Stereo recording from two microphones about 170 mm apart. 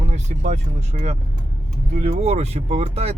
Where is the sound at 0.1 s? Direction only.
40° right (ahead or behind).